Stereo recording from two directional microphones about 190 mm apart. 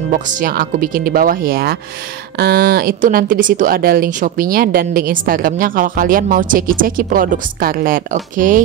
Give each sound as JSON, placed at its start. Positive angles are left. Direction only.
{"t": 0.1, "sound": "speech", "side_deg": -45}